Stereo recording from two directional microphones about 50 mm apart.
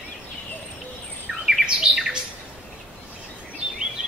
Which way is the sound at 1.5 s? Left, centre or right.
Centre.